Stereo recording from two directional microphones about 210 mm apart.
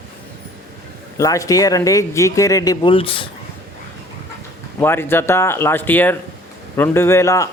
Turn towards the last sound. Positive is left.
turn(degrees=15)  # may be behind; listen again after turning